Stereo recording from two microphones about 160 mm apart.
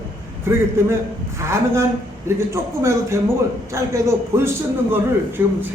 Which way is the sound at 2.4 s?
15° right (ahead or behind).